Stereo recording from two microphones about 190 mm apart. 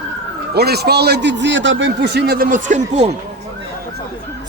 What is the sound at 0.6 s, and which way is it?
A man's voice, 55° right (ahead or behind).